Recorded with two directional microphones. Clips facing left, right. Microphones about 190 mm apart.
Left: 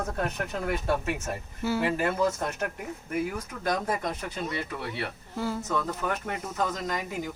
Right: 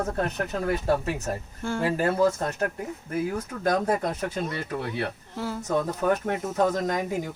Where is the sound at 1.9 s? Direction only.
35° right (ahead or behind).